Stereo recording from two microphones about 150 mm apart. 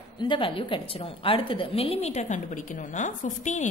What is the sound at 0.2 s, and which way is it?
A woman's voice, 35° left (ahead or behind).